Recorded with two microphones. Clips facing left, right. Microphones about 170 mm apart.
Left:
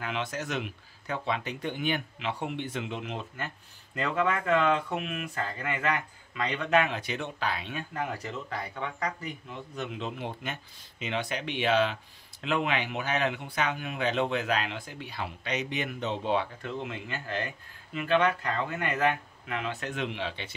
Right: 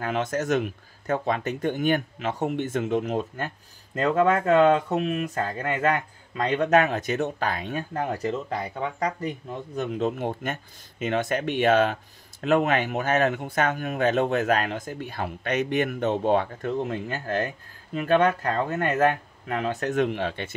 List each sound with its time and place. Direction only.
0.0 s speech: 45° right (ahead or behind)